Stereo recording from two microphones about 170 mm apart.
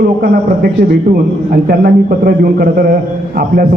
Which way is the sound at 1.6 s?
60° right (ahead or behind).